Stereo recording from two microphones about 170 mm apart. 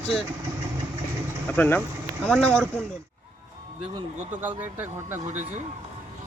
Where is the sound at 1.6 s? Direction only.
10° left (ahead or behind).